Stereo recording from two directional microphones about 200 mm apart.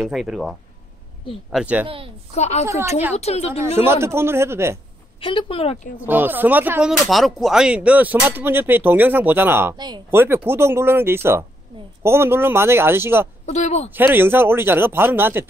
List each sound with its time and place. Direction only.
0.0 s speech: centre (ahead or behind)
2.3 s speech: 35° left (ahead or behind)
3.7 s speech: 10° right (ahead or behind)
5.2 s speech: 25° left (ahead or behind)
5.9 s speech: 10° right (ahead or behind)
10.1 s speech: 10° right (ahead or behind)
13.5 s speech: 35° left (ahead or behind)
13.9 s speech: 10° right (ahead or behind)